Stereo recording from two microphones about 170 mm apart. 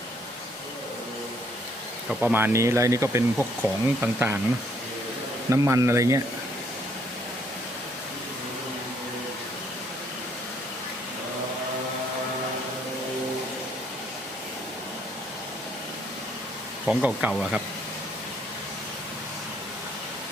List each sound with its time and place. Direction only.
2.0 s speech: 10° right (ahead or behind)
5.5 s speech: 15° right (ahead or behind)
16.8 s speech: centre (ahead or behind)